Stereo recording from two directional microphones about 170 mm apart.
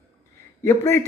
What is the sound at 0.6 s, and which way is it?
Speech, 20° left (ahead or behind).